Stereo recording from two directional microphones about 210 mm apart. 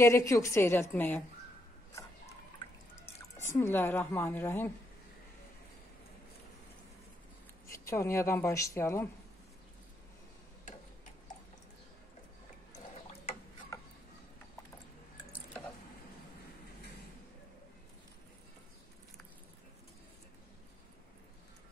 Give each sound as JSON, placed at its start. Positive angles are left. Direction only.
{"t": 0.0, "sound": "a woman's voice", "side_deg": 15}
{"t": 3.4, "sound": "a woman's voice", "side_deg": 10}
{"t": 7.7, "sound": "a woman's voice", "side_deg": 15}
{"t": 13.7, "sound": "a sound", "side_deg": 15}